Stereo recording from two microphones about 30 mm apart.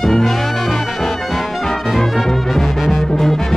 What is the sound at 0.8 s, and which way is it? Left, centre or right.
Brass instrument, centre.